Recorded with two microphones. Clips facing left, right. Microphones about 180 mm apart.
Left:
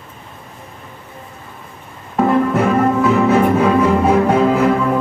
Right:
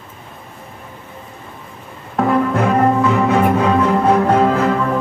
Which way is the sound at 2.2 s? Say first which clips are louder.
Left 1 dB; centre (ahead or behind).